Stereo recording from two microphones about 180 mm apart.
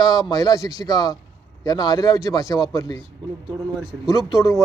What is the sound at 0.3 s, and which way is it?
A man's voice, 20° left (ahead or behind).